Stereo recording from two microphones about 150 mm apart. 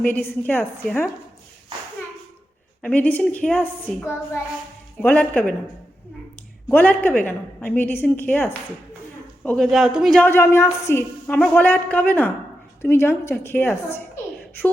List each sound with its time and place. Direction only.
0.0 s a woman's voice: 10° left (ahead or behind)
2.8 s a woman's voice: 10° left (ahead or behind)
5.0 s a woman's voice: 10° left (ahead or behind)
6.7 s a woman's voice: 10° left (ahead or behind)
10.2 s a woman's voice: 15° left (ahead or behind)